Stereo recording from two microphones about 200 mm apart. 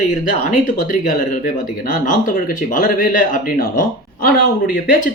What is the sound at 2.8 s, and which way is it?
Speech, 45° left (ahead or behind).